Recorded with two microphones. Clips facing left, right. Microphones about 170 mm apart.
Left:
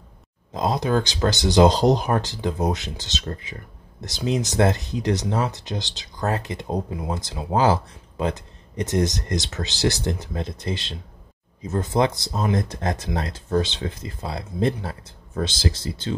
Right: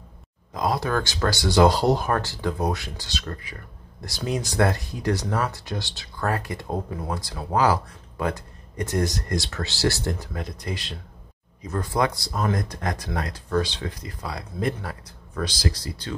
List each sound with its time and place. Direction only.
0.5 s speech: 25° left (ahead or behind)